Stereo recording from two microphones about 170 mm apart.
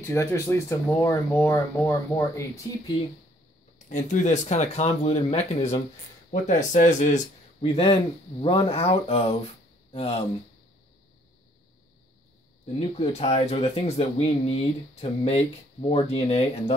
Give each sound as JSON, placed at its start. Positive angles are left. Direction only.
{"t": 0.0, "sound": "speech", "side_deg": 15}
{"t": 3.9, "sound": "speech", "side_deg": 45}
{"t": 7.6, "sound": "speech", "side_deg": 35}
{"t": 12.7, "sound": "speech", "side_deg": 35}